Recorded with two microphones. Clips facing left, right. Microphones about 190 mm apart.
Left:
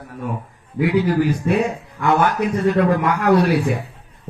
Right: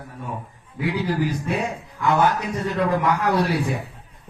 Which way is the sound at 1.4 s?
60° left (ahead or behind).